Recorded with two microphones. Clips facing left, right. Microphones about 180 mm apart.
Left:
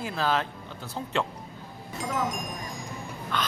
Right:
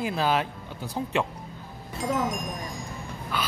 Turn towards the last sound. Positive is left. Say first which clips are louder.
# even
turn(degrees=-5)  # may be behind; listen again after turning